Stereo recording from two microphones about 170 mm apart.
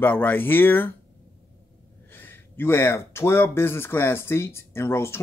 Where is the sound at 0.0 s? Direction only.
10° left (ahead or behind).